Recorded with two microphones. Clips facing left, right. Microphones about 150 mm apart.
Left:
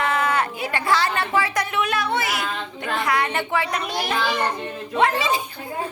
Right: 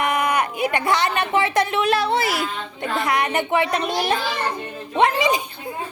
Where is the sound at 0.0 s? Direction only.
15° right (ahead or behind).